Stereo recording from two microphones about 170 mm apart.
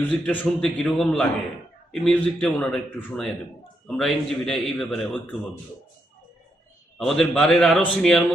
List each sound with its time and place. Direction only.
0.3 s a man's voice: 5° left (ahead or behind)
7.0 s a man's voice: 5° left (ahead or behind)